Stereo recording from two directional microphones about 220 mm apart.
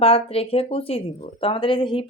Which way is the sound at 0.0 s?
25° left (ahead or behind).